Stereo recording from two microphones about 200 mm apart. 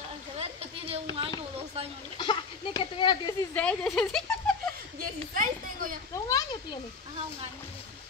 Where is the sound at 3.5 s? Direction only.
5° left (ahead or behind).